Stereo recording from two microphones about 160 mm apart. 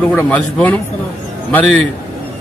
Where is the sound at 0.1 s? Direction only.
10° left (ahead or behind).